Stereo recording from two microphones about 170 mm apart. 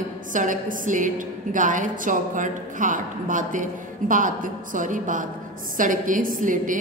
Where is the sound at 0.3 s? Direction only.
50° right (ahead or behind).